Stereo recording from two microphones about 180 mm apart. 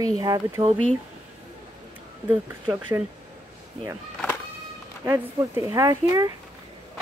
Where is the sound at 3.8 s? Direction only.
30° right (ahead or behind).